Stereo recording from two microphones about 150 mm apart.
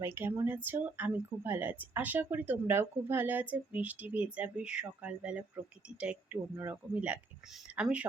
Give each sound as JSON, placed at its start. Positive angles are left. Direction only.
{"t": 0.0, "sound": "speech", "side_deg": -15}